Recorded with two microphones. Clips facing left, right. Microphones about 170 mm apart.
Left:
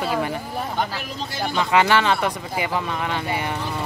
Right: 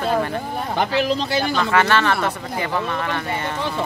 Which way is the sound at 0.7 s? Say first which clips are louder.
Right 7 dB; 85° right.